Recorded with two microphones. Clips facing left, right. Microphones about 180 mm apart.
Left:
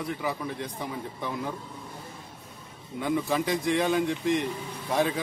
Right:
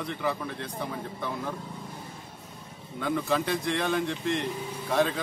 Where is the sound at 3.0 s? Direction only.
10° left (ahead or behind).